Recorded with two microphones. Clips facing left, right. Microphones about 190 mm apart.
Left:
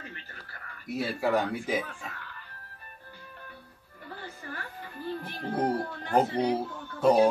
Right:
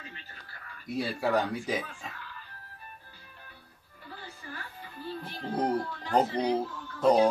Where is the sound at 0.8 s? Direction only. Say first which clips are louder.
Left 1 dB; 5° left (ahead or behind).